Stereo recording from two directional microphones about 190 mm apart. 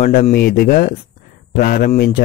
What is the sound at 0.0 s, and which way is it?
Speech, 45° left (ahead or behind).